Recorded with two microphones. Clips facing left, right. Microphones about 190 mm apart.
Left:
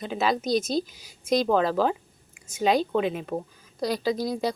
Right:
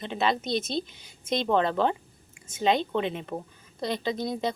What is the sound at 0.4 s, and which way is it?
A woman's voice, 30° right (ahead or behind).